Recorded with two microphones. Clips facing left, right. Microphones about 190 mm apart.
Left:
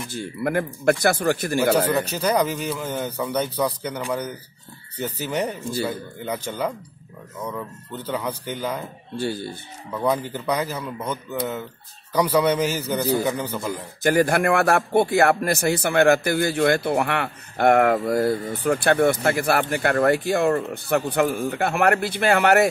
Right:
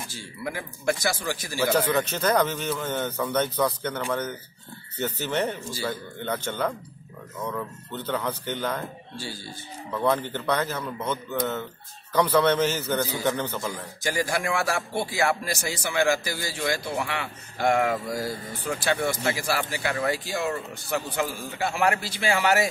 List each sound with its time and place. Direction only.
0.1 s speech: 60° left (ahead or behind)
2.1 s speech: 10° left (ahead or behind)
9.1 s speech: 60° left (ahead or behind)
9.9 s speech: 10° left (ahead or behind)
14.0 s speech: 60° left (ahead or behind)